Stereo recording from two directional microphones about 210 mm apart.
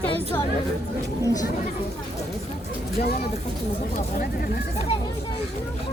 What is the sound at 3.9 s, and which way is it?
Speech, 45° left (ahead or behind).